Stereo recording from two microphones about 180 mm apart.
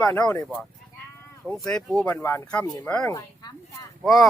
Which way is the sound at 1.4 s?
5° left (ahead or behind).